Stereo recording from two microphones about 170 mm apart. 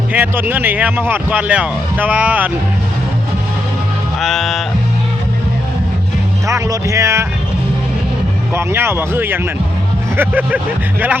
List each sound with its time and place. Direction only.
0.1 s speech: 10° right (ahead or behind)
4.2 s music: centre (ahead or behind)
6.5 s speech: 20° right (ahead or behind)
8.5 s speech: 15° right (ahead or behind)